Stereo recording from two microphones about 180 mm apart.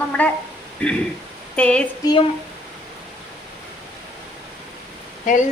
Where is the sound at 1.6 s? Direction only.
5° left (ahead or behind).